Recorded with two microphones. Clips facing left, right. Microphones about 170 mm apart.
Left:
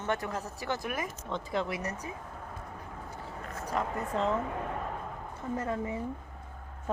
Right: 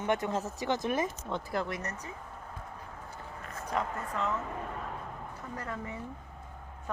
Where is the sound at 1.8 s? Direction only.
10° left (ahead or behind).